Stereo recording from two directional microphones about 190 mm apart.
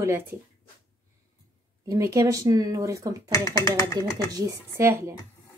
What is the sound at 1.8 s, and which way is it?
Speech, 15° right (ahead or behind).